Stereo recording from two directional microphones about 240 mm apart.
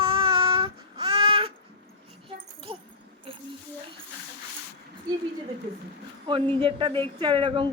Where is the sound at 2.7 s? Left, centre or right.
Right.